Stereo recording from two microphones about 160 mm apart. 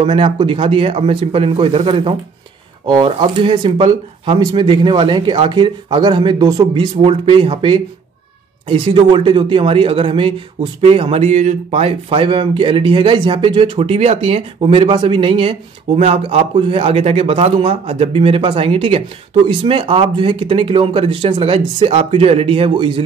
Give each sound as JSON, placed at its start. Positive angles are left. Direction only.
{"t": 0.0, "sound": "a man's voice", "side_deg": -35}